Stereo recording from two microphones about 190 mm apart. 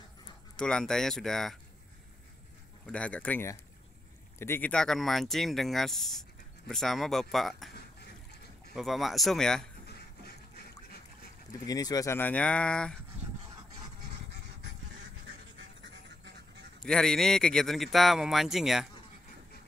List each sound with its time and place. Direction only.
0.6 s speech: 5° left (ahead or behind)
2.9 s speech: 5° left (ahead or behind)
8.7 s speech: centre (ahead or behind)
11.6 s speech: 20° left (ahead or behind)
15.8 s duck: 65° right (ahead or behind)
16.8 s speech: 5° left (ahead or behind)